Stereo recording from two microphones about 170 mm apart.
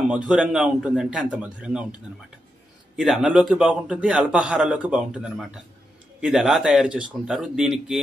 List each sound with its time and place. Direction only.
0.1 s a man's voice: 5° right (ahead or behind)
3.0 s a man's voice: 5° right (ahead or behind)